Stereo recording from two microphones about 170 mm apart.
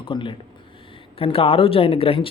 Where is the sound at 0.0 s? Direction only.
30° left (ahead or behind).